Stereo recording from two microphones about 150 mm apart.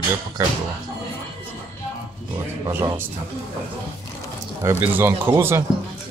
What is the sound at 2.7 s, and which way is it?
Speech, 15° right (ahead or behind).